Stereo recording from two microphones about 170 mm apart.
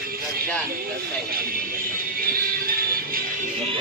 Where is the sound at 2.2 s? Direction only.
60° right (ahead or behind).